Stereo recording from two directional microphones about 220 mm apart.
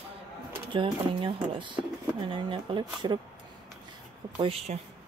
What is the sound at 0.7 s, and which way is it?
Speech, 20° right (ahead or behind).